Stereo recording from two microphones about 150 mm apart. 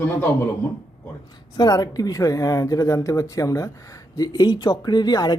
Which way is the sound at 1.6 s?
25° left (ahead or behind).